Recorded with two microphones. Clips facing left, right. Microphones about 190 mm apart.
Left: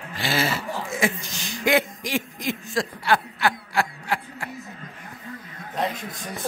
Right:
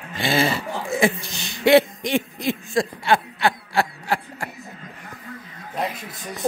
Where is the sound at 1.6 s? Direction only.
35° right (ahead or behind).